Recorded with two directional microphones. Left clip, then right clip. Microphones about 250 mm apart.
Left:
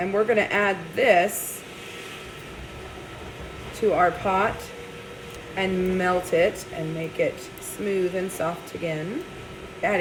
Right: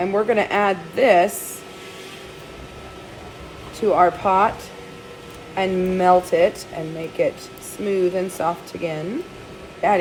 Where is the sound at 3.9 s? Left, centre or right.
Right.